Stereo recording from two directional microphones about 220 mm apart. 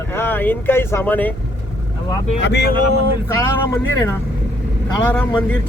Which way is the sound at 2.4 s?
50° left (ahead or behind).